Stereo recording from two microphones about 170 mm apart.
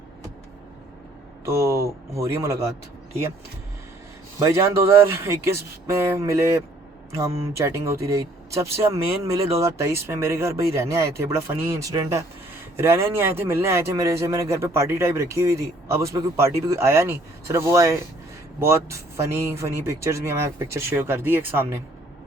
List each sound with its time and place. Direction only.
1.5 s speech: 15° right (ahead or behind)
4.4 s speech: 15° right (ahead or behind)